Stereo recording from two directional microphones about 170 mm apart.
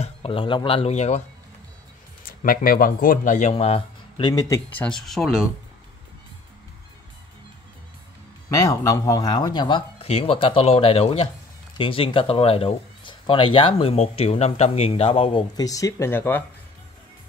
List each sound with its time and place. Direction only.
0.0 s speech: 30° left (ahead or behind)
2.2 s speech: 60° left (ahead or behind); by 4.6 s 25° left (ahead or behind)
4.7 s speech: 5° left (ahead or behind)
8.5 s speech: 20° left (ahead or behind)